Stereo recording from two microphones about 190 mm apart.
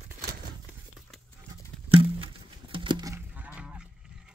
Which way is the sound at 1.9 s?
30° right (ahead or behind).